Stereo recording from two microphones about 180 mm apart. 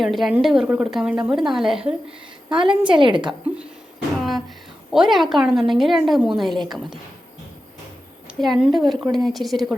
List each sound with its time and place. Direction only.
0.0 s a woman's voice: centre (ahead or behind)
2.5 s a woman's voice: 25° right (ahead or behind)
4.2 s a sound: centre (ahead or behind)
4.9 s a woman's voice: centre (ahead or behind)
8.4 s a woman's voice: centre (ahead or behind)